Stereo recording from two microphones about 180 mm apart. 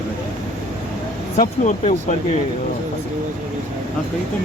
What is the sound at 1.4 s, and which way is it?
Speech, 40° left (ahead or behind).